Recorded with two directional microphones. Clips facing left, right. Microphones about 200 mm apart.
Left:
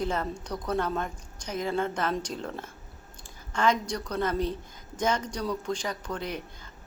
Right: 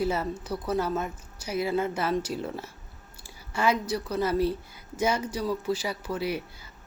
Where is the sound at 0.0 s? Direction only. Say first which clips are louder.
Right 2 dB; 5° right (ahead or behind).